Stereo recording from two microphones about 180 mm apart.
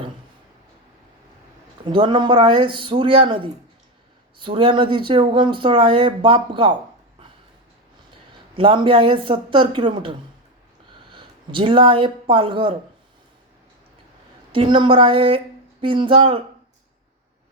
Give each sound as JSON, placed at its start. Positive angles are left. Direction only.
{"t": 1.8, "sound": "speech", "side_deg": -30}
{"t": 8.5, "sound": "speech", "side_deg": -30}
{"t": 14.5, "sound": "speech", "side_deg": -30}